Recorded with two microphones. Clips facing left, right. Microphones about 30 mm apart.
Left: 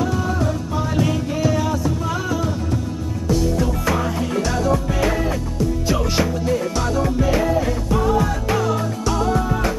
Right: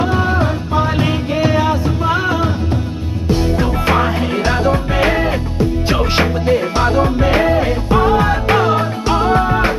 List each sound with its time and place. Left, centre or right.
0.0 s music: right